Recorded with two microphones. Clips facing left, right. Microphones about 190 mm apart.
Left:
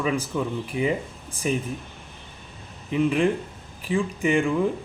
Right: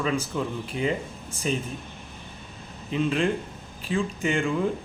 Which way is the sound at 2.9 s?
15° left (ahead or behind).